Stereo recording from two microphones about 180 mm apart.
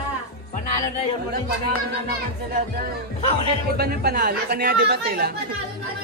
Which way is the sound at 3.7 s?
60° right (ahead or behind).